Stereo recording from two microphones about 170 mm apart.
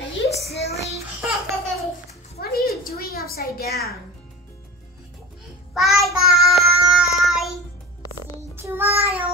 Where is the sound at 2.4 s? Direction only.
65° left (ahead or behind).